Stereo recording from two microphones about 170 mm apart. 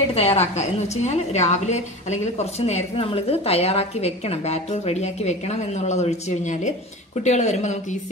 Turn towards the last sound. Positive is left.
turn(degrees=45)  # may be behind; listen again after turning